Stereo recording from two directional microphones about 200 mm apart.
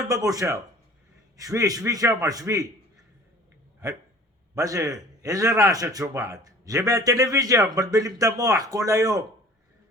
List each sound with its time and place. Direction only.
0.1 s a man's voice: 15° right (ahead or behind)
4.5 s a man's voice: 15° right (ahead or behind)